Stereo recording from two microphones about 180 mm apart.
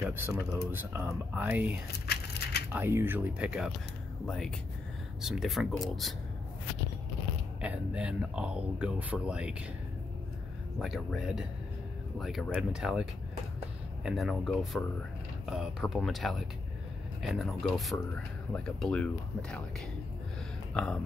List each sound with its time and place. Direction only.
0.0 s speech: 10° right (ahead or behind)
1.9 s a sound: 65° left (ahead or behind)
2.7 s speech: 10° right (ahead or behind)
7.6 s speech: 5° right (ahead or behind)
10.8 s speech: centre (ahead or behind)
14.0 s speech: centre (ahead or behind)
20.7 s speech: 5° left (ahead or behind)